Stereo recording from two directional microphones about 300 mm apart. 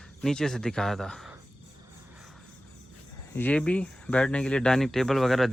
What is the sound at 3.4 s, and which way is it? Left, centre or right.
Speech, centre.